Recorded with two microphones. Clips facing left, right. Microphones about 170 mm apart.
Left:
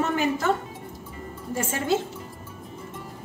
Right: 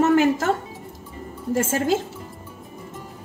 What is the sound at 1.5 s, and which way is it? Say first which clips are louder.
Speech: right 5 dB; 90° right.